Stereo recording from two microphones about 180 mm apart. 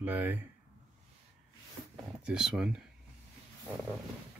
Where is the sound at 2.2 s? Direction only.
5° right (ahead or behind).